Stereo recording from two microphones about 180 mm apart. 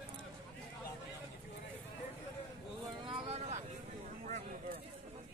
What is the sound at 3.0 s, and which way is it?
Vehicle, 30° right (ahead or behind).